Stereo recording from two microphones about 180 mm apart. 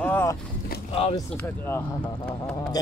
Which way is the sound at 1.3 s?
10° left (ahead or behind).